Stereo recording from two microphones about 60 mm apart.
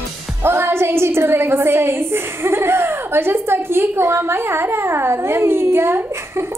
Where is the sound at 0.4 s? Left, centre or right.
Right.